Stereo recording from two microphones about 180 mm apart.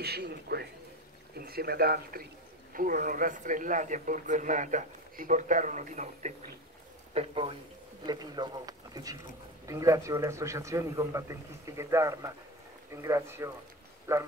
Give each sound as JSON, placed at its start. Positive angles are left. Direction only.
{"t": 0.0, "sound": "speech", "side_deg": -65}
{"t": 7.2, "sound": "a man's voice", "side_deg": -30}